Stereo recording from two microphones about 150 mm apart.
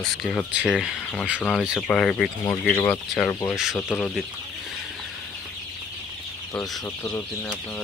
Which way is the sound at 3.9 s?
10° left (ahead or behind).